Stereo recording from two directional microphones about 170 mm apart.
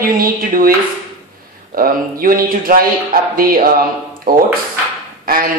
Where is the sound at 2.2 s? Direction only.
55° right (ahead or behind).